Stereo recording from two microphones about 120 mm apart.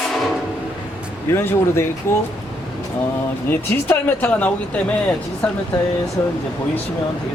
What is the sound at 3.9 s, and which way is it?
Speech, 15° left (ahead or behind).